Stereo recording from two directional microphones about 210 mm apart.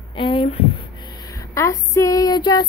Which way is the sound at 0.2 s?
25° left (ahead or behind).